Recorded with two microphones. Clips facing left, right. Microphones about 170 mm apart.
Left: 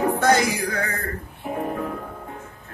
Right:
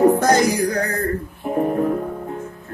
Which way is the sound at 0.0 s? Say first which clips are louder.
Right 5 dB; 40° right (ahead or behind).